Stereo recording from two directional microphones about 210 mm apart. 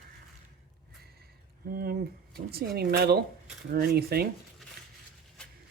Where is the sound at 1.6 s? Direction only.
45° right (ahead or behind).